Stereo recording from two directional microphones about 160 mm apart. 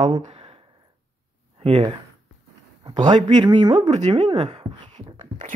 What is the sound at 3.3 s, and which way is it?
Speech, 25° right (ahead or behind).